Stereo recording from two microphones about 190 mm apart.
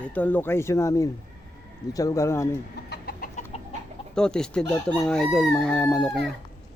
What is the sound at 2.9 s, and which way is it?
Chicken, 50° left (ahead or behind).